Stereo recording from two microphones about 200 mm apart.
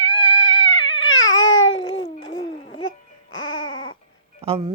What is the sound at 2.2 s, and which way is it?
Babbling, 75° left (ahead or behind).